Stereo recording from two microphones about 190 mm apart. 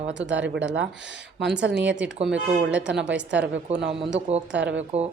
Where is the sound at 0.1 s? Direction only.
75° right (ahead or behind).